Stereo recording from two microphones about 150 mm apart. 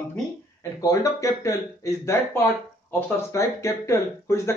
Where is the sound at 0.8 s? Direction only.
20° left (ahead or behind).